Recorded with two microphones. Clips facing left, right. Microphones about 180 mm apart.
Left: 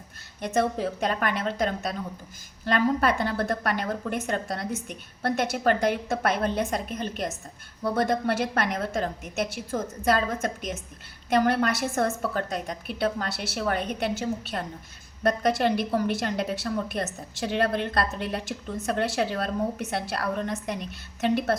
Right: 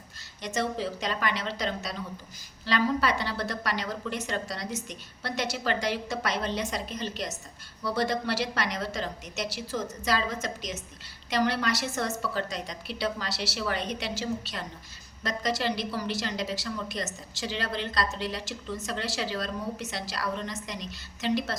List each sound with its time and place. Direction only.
0.4 s a woman's voice: 55° left (ahead or behind)